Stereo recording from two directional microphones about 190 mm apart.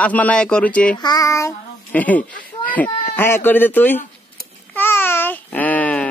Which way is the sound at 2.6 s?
10° left (ahead or behind).